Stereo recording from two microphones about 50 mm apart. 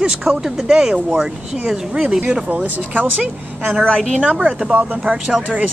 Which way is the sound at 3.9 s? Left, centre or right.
Centre.